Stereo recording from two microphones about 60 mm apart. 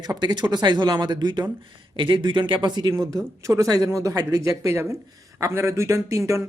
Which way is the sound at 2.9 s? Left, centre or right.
Right.